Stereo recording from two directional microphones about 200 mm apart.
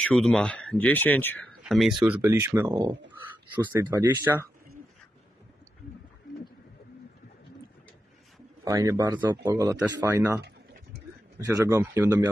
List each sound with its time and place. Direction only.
0.0 s speech: 5° left (ahead or behind); by 4.0 s 20° right (ahead or behind)
4.0 s speech: 10° right (ahead or behind)
8.6 s speech: 15° right (ahead or behind)